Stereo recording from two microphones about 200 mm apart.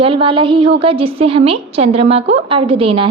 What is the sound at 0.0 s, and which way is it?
A woman's voice, 25° right (ahead or behind).